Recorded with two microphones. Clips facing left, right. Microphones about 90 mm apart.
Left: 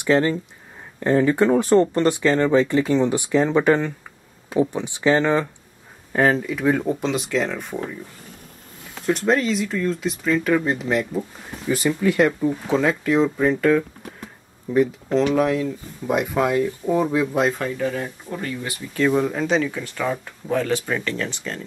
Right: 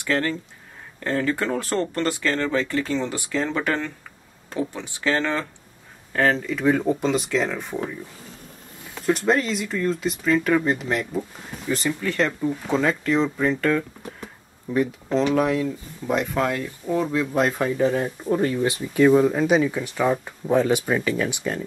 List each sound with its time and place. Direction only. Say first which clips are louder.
0.0 s speech: left 5 dB; 20° left (ahead or behind)
9.0 s speech: left 1 dB; centre (ahead or behind)
17.7 s speech: right 4 dB; 20° right (ahead or behind)
18.7 s speech: right 3 dB; 10° right (ahead or behind)